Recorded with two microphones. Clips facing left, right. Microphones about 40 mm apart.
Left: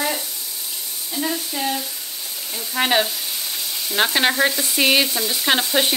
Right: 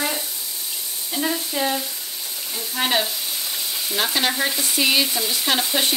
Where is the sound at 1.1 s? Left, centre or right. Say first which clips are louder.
Right 1 dB; centre.